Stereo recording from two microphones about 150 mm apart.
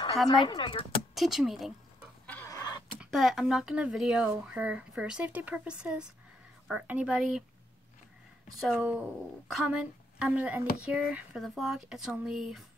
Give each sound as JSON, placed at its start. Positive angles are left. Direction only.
{"t": 0.3, "sound": "speech", "side_deg": 30}
{"t": 1.1, "sound": "speech", "side_deg": 0}
{"t": 2.4, "sound": "vehicle", "side_deg": 25}
{"t": 3.0, "sound": "speech", "side_deg": 0}
{"t": 8.5, "sound": "speech", "side_deg": -5}